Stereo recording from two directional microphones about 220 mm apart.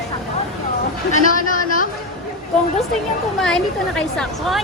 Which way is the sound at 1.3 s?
35° left (ahead or behind).